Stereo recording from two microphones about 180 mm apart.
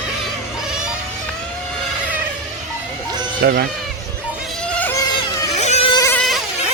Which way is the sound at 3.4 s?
60° right (ahead or behind).